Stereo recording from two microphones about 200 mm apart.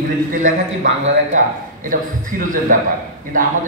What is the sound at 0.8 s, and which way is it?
Speech, 70° right (ahead or behind).